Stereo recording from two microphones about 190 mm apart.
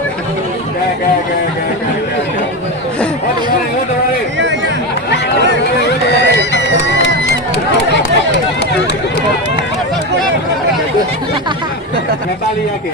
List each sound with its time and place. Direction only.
5.8 s run: 65° left (ahead or behind)